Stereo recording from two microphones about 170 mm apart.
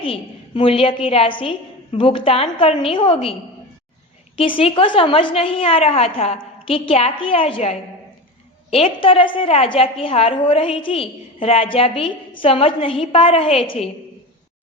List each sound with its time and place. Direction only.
0.0 s a woman's voice: 30° left (ahead or behind)
4.4 s a woman's voice: 35° left (ahead or behind)